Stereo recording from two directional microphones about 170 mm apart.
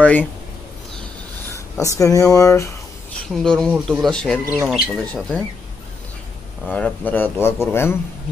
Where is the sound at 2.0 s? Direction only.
20° left (ahead or behind).